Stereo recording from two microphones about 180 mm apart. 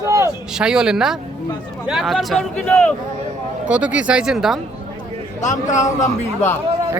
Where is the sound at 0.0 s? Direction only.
15° right (ahead or behind).